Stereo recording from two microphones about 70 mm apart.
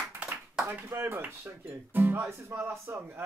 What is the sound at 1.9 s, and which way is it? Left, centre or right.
Music, right.